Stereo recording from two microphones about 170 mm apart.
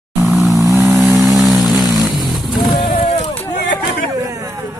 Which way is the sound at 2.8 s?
35° left (ahead or behind).